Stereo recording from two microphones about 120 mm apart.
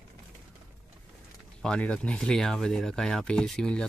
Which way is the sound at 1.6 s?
10° left (ahead or behind).